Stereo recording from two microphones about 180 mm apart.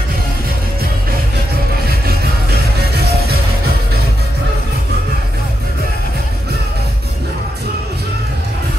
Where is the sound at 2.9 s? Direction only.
60° right (ahead or behind).